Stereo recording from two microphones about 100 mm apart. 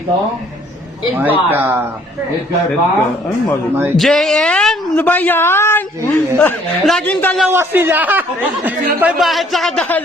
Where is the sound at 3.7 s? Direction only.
25° right (ahead or behind).